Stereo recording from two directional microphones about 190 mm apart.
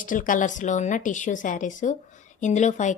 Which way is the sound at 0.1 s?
45° left (ahead or behind).